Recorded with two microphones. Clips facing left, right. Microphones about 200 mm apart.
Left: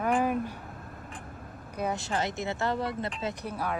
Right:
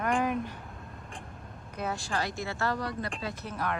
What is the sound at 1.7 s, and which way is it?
Speech, 15° left (ahead or behind).